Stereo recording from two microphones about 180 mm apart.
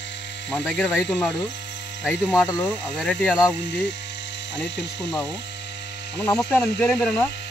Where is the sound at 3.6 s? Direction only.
85° left.